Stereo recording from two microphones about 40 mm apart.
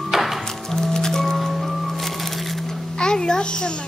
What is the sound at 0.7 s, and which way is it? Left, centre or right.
Music, centre.